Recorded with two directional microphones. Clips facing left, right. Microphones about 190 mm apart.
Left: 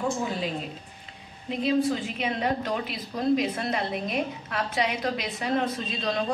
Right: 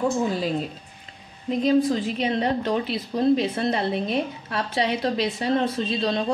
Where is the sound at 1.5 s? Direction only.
40° right (ahead or behind).